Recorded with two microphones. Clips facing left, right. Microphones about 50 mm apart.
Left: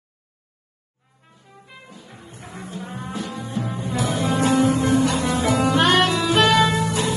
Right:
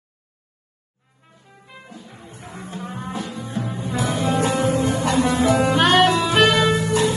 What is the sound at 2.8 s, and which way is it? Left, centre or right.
Music, right.